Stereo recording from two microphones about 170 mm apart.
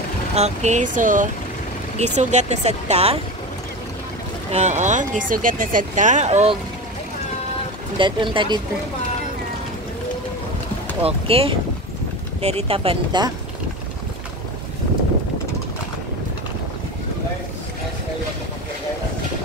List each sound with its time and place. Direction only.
0.4 s speech: 40° right (ahead or behind)
4.5 s speech: 40° right (ahead or behind)
8.0 s speech: 30° right (ahead or behind)
11.0 s speech: 35° right (ahead or behind)